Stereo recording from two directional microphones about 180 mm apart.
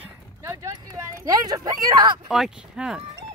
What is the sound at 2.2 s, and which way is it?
Speech, 5° right (ahead or behind).